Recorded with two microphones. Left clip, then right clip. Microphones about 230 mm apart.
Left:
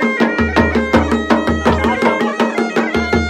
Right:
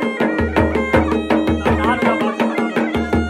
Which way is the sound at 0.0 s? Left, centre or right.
Left.